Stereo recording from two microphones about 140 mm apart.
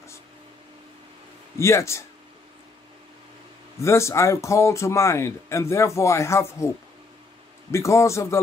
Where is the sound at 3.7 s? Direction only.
20° left (ahead or behind).